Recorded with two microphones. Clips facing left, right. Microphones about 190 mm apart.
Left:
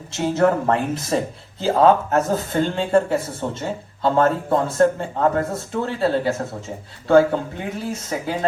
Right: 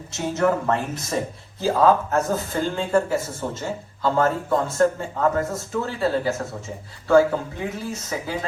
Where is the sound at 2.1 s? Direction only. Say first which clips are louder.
Left 3 dB; 25° left (ahead or behind).